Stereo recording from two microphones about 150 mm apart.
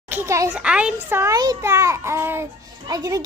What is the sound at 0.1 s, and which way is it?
Speech, 20° right (ahead or behind).